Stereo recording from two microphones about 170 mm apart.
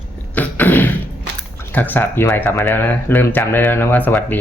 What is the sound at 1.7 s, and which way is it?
Speech, 10° left (ahead or behind).